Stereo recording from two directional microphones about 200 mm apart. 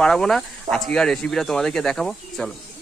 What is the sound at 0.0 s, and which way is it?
Speech, 5° left (ahead or behind).